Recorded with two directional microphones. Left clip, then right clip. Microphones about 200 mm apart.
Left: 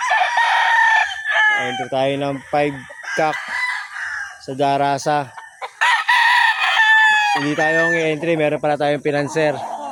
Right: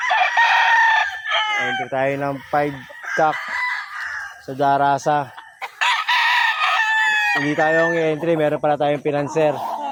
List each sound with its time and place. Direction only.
0.1 s chicken: 30° right (ahead or behind)
2.0 s chicken: 25° left (ahead or behind)
2.2 s speech: 15° left (ahead or behind)
4.5 s speech: 10° left (ahead or behind)
5.8 s chicken: centre (ahead or behind)
9.6 s a sound: 20° right (ahead or behind)